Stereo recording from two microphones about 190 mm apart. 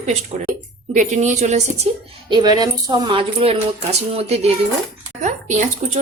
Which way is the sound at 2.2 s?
20° right (ahead or behind).